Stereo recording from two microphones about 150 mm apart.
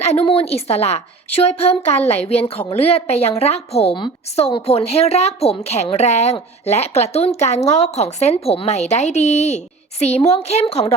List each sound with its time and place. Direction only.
0.1 s a woman's voice: 45° left (ahead or behind)